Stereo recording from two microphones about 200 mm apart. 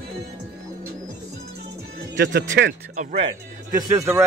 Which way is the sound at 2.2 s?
55° right (ahead or behind).